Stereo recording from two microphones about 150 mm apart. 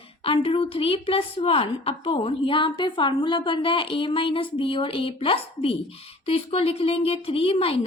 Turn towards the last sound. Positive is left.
turn(degrees=40)  # may be behind; listen again after turning